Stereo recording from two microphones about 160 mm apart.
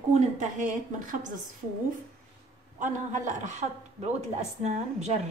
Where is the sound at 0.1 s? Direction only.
50° right (ahead or behind).